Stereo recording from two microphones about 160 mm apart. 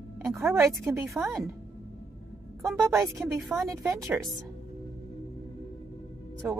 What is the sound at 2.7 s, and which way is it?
Speech, centre (ahead or behind).